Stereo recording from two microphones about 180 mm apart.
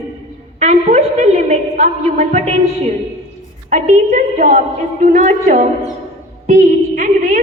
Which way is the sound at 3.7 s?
45° right (ahead or behind).